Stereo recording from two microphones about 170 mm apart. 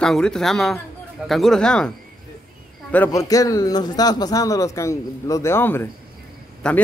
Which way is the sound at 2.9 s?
15° left (ahead or behind).